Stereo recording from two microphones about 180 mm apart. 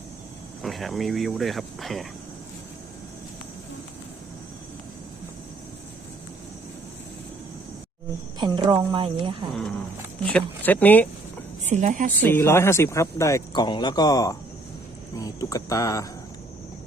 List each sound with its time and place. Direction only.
0.6 s speech: centre (ahead or behind)
8.4 s a woman's voice: 25° right (ahead or behind)
9.5 s speech: centre (ahead or behind)
11.6 s a woman's voice: 40° right (ahead or behind)
12.2 s speech: 10° left (ahead or behind)